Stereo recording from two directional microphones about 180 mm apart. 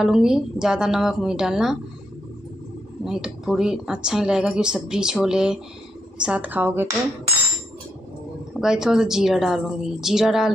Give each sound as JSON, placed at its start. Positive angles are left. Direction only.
{"t": 0.0, "sound": "speech", "side_deg": -5}
{"t": 3.1, "sound": "speech", "side_deg": 0}
{"t": 8.5, "sound": "speech", "side_deg": -5}